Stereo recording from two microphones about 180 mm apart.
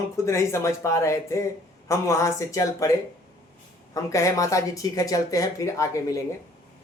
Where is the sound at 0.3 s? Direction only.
15° left (ahead or behind).